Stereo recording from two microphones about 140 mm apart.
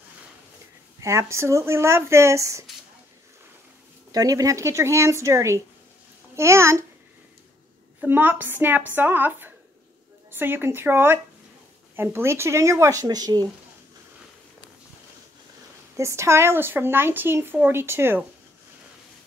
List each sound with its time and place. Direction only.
1.0 s speech: 20° right (ahead or behind)
4.1 s speech: 25° right (ahead or behind)
8.0 s speech: 15° right (ahead or behind); by 13.5 s 30° right (ahead or behind)
16.0 s speech: 20° right (ahead or behind)